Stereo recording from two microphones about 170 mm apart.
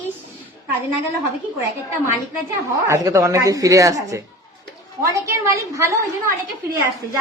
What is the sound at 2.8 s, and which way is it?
Speech, 15° right (ahead or behind).